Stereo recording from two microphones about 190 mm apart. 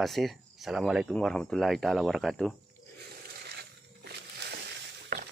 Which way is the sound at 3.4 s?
60° right (ahead or behind).